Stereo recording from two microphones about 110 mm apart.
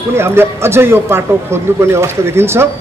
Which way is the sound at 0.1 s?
25° right (ahead or behind).